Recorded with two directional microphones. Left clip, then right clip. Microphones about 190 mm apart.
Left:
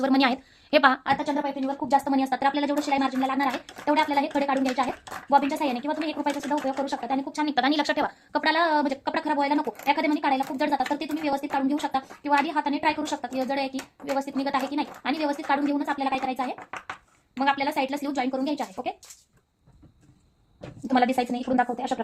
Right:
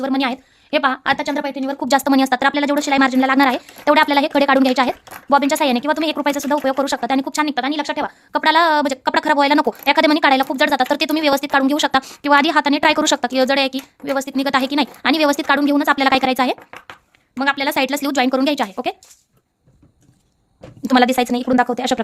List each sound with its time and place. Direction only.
0.0 s a woman's voice: 15° right (ahead or behind)
1.0 s speech: 45° right (ahead or behind)
7.5 s speech: 15° right (ahead or behind)
8.3 s speech: 35° right (ahead or behind); by 16.6 s 55° right (ahead or behind)
17.3 s speech: 40° right (ahead or behind)
20.8 s speech: 50° right (ahead or behind)